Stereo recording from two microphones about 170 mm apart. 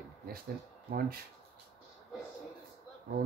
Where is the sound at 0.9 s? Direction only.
60° right (ahead or behind).